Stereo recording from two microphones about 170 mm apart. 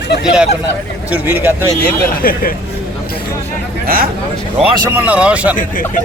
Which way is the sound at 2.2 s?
60° left (ahead or behind).